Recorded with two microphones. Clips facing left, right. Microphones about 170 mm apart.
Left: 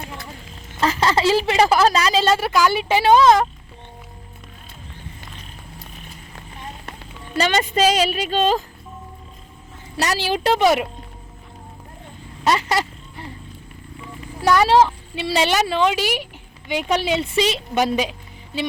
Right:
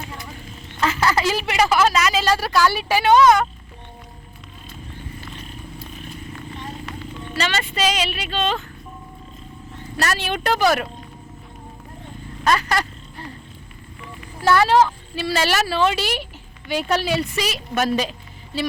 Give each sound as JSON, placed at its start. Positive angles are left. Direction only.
{"t": 0.8, "sound": "a woman's voice", "side_deg": 30}
{"t": 3.2, "sound": "speech", "side_deg": 30}
{"t": 7.8, "sound": "speech", "side_deg": 40}
{"t": 10.0, "sound": "a woman's voice", "side_deg": 25}
{"t": 12.5, "sound": "a sound", "side_deg": 20}
{"t": 14.4, "sound": "a woman's voice", "side_deg": 20}